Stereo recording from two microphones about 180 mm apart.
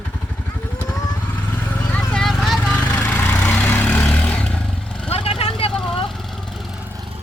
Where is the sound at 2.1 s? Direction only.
Centre (ahead or behind).